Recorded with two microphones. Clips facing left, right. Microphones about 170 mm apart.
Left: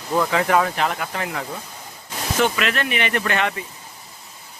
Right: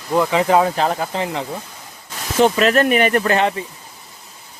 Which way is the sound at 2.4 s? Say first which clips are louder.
Right 8 dB; 35° right (ahead or behind).